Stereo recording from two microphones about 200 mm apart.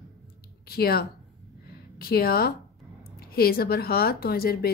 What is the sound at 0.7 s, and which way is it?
A woman's voice, 50° left (ahead or behind).